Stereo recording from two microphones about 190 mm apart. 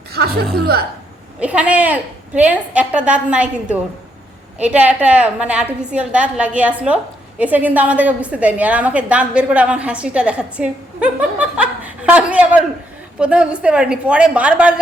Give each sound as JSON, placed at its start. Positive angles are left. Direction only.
{"t": 0.1, "sound": "music", "side_deg": -55}
{"t": 0.6, "sound": "a woman's voice", "side_deg": -55}
{"t": 1.4, "sound": "a woman's voice", "side_deg": -5}